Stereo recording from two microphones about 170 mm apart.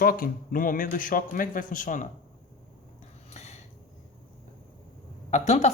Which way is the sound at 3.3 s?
40° left (ahead or behind).